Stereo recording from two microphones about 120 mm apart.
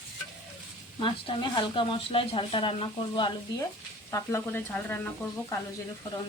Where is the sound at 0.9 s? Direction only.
40° left (ahead or behind).